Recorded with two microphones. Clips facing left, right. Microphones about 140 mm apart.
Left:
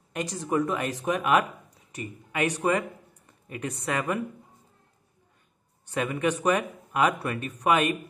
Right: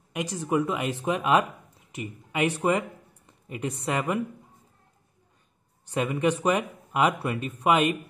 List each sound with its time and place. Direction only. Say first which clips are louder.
0.1 s speech: right 1 dB; 10° right (ahead or behind)
0.7 s speech: even; 20° right (ahead or behind)
5.9 s speech: right 2 dB; 30° right (ahead or behind)
6.5 s speech: even; 15° right (ahead or behind)